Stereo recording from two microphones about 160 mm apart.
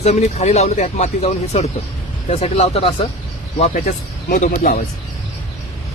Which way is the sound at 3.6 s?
50° left (ahead or behind).